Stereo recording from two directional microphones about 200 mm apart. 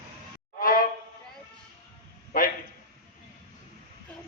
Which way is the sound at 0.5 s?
45° left (ahead or behind).